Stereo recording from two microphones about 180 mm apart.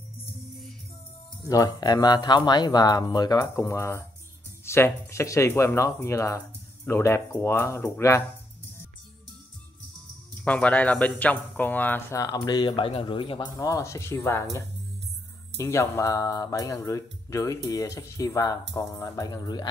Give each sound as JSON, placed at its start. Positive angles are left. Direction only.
{"t": 1.4, "sound": "speech", "side_deg": 20}
{"t": 10.4, "sound": "speech", "side_deg": 5}